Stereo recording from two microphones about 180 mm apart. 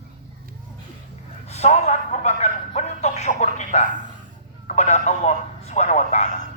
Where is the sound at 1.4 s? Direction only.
35° left (ahead or behind).